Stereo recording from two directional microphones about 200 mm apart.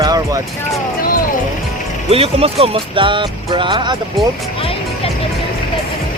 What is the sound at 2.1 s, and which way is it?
Speech, 30° right (ahead or behind).